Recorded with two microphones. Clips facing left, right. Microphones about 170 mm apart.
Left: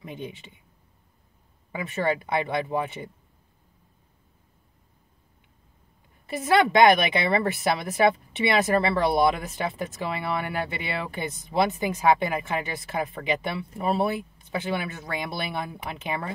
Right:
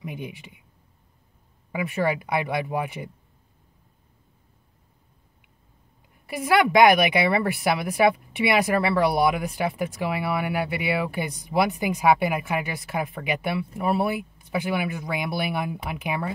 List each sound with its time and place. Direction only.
0.0 s a woman's voice: 15° right (ahead or behind)
1.7 s a woman's voice: 10° right (ahead or behind)
6.2 s a woman's voice: 10° right (ahead or behind)